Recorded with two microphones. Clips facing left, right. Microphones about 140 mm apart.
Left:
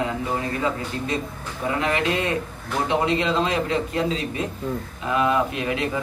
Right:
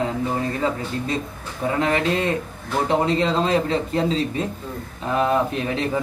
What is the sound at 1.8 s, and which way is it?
A man's voice, 35° right (ahead or behind).